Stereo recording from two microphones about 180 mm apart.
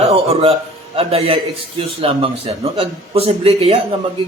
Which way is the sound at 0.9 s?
35° right (ahead or behind).